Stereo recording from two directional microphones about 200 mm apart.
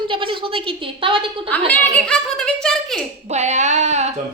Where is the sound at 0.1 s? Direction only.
25° right (ahead or behind).